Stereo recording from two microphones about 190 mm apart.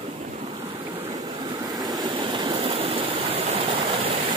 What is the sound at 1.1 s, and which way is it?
Vehicle, 20° right (ahead or behind).